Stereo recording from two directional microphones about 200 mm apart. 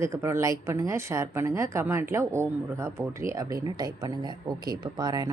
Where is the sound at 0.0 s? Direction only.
15° right (ahead or behind).